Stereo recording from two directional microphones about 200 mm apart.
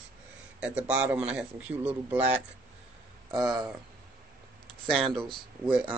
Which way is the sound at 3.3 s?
20° right (ahead or behind).